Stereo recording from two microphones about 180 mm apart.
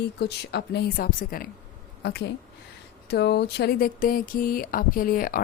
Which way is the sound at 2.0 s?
65° left (ahead or behind).